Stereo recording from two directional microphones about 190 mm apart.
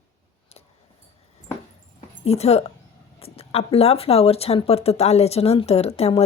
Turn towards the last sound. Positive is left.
turn(degrees=30)  # may be behind; listen again after turning